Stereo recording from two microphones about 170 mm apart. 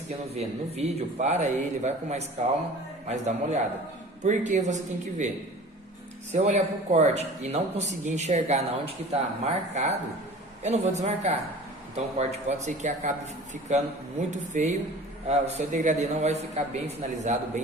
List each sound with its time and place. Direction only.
0.1 s speech: 40° right (ahead or behind)
6.3 s speech: 40° right (ahead or behind)